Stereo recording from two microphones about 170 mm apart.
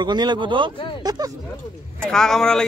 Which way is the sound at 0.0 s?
25° right (ahead or behind).